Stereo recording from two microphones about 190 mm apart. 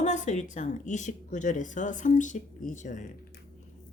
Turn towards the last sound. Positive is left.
turn(degrees=40)  # may be behind; listen again after turning